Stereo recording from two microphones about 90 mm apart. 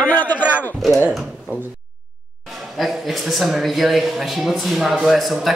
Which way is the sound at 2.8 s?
Centre (ahead or behind).